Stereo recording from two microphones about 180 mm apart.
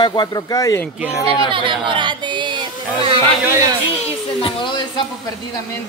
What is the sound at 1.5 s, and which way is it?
Speech, 30° right (ahead or behind).